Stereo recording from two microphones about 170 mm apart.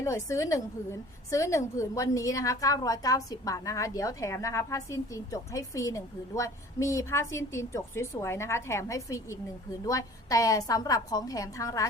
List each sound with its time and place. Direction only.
0.0 s a woman's voice: 20° left (ahead or behind)